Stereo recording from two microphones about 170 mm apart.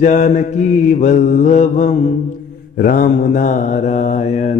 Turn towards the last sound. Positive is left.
turn(degrees=45)  # may be behind; listen again after turning